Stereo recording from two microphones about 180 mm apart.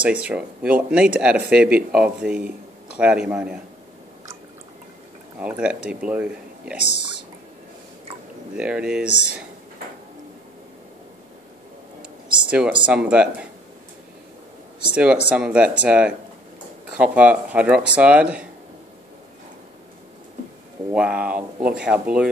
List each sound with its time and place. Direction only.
0.0 s speech: 5° right (ahead or behind)
5.4 s speech: 5° right (ahead or behind)
6.9 s a sound: 70° left (ahead or behind)
8.5 s speech: 5° right (ahead or behind)
9.1 s speech: 70° left (ahead or behind)
12.4 s speech: 5° right (ahead or behind)
15.2 s speech: 5° right (ahead or behind)
20.9 s speech: 5° right (ahead or behind)